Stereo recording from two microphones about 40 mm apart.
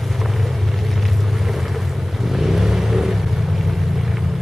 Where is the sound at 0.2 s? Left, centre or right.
Centre.